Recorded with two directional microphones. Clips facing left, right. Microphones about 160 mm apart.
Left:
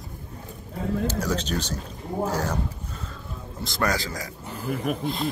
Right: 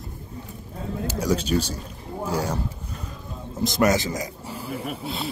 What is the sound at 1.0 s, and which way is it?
Speech, 10° right (ahead or behind).